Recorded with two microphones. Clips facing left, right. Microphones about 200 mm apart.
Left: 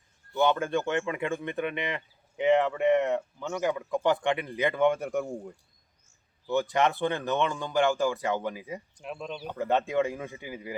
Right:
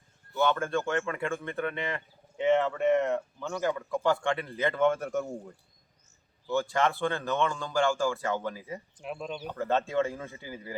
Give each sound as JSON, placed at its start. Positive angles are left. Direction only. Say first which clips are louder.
{"t": 0.3, "sound": "speech", "louder": "left 2 dB", "side_deg": 15}
{"t": 3.0, "sound": "speech", "louder": "left 1 dB", "side_deg": 5}
{"t": 3.6, "sound": "speech", "louder": "left 1 dB", "side_deg": 15}
{"t": 6.5, "sound": "speech", "louder": "left 2 dB", "side_deg": 20}
{"t": 9.0, "sound": "speech", "louder": "right 2 dB", "side_deg": -5}
{"t": 9.5, "sound": "speech", "louder": "left 2 dB", "side_deg": 15}